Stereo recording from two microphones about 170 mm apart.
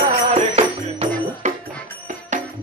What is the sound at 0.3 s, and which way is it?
Music, 40° right (ahead or behind).